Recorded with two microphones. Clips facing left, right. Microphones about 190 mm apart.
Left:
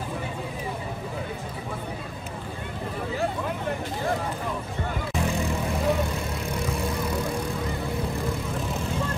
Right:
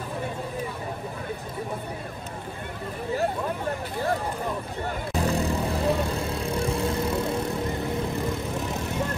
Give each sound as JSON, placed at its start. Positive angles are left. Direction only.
{"t": 5.1, "sound": "vehicle", "side_deg": -35}